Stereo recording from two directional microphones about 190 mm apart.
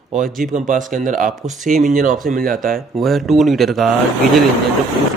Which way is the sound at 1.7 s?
45° right (ahead or behind).